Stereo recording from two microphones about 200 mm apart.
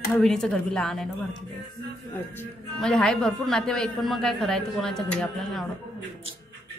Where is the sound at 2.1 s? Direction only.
5° left (ahead or behind).